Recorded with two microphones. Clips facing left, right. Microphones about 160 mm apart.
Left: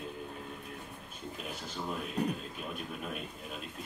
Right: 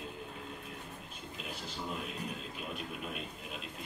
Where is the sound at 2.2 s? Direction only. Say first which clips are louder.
Left 9 dB; 65° left (ahead or behind).